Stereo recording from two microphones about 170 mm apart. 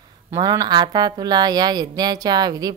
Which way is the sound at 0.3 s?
20° right (ahead or behind).